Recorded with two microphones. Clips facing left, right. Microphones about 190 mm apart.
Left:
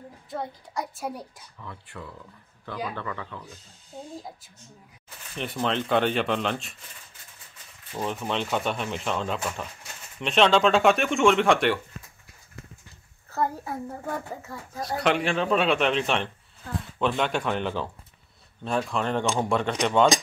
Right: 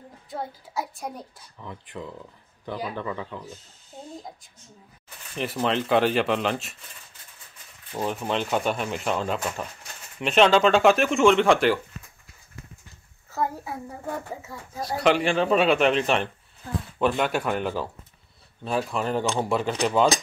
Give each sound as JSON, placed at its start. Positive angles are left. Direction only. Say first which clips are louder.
{"t": 0.3, "sound": "a child's voice", "louder": "even", "side_deg": -5}
{"t": 1.6, "sound": "speech", "louder": "right 4 dB", "side_deg": -20}
{"t": 5.3, "sound": "a child's voice", "louder": "right 2 dB", "side_deg": 0}
{"t": 7.9, "sound": "a child's voice", "louder": "right 2 dB", "side_deg": -5}
{"t": 13.3, "sound": "a child's voice", "louder": "left 1 dB", "side_deg": 0}